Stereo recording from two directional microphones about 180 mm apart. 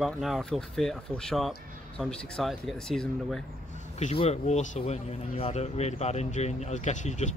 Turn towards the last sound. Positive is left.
turn(degrees=40)  # may be behind; listen again after turning